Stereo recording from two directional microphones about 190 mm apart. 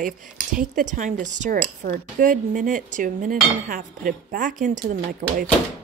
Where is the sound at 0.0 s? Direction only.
45° right (ahead or behind).